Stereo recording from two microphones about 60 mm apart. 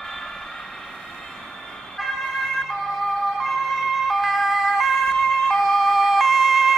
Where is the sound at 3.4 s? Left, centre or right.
Centre.